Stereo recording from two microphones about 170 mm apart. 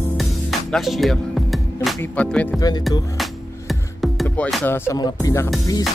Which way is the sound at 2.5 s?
20° left (ahead or behind).